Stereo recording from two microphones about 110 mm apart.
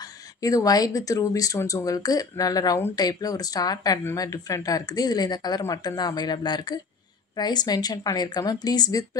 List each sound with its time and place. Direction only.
0.0 s speech: 30° left (ahead or behind)